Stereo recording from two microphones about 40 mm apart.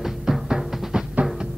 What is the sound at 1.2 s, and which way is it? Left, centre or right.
Music, right.